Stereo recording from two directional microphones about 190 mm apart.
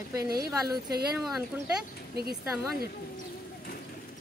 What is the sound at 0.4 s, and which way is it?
Speech, 20° right (ahead or behind).